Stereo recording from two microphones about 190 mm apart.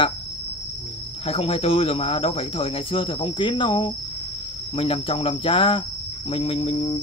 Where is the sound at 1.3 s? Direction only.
30° left (ahead or behind).